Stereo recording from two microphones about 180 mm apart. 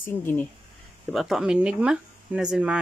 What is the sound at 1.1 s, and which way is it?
Speech, centre (ahead or behind).